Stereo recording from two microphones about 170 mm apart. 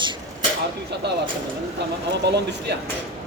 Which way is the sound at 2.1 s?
85° right.